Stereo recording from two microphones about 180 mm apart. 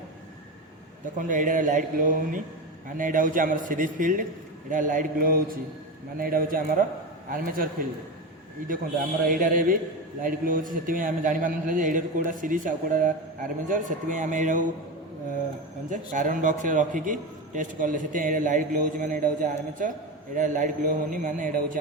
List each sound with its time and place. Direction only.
1.2 s a man's voice: 45° right (ahead or behind)
9.2 s a man's voice: 50° right (ahead or behind)
15.9 s a man's voice: 45° right (ahead or behind)